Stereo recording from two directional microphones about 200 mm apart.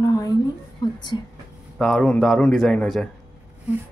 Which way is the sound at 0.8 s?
20° left (ahead or behind).